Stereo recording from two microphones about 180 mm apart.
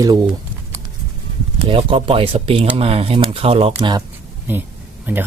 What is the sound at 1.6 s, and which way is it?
Speech, 30° right (ahead or behind).